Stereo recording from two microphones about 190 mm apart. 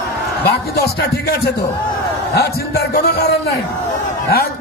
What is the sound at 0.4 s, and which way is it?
A man's voice, 60° left (ahead or behind).